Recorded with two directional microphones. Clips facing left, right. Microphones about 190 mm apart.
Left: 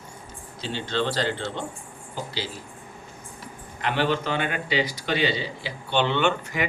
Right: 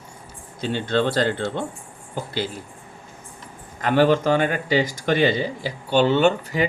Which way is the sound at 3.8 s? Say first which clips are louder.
Right 7 dB; 45° right (ahead or behind).